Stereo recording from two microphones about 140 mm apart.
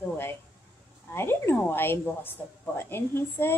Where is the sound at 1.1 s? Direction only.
15° left (ahead or behind).